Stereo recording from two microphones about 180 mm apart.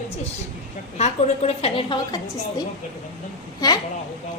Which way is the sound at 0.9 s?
35° left (ahead or behind).